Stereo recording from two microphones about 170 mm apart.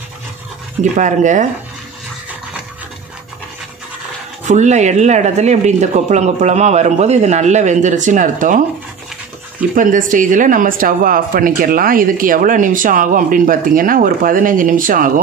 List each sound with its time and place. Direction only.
0.9 s speech: 45° right (ahead or behind)
4.5 s speech: 45° right (ahead or behind)
9.8 s speech: 50° right (ahead or behind)